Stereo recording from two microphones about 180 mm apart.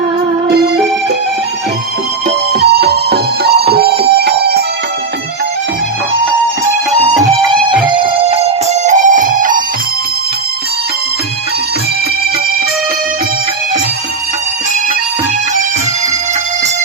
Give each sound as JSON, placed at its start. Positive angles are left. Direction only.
{"t": 2.5, "sound": "music", "side_deg": -65}
{"t": 7.9, "sound": "music", "side_deg": -25}